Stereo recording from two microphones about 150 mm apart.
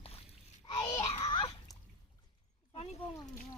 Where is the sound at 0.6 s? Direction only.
40° left (ahead or behind).